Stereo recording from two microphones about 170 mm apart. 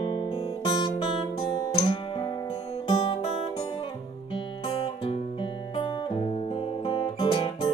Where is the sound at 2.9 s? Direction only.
30° left (ahead or behind).